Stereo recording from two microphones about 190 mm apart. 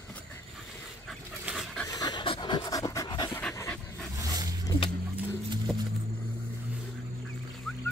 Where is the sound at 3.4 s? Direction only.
10° left (ahead or behind).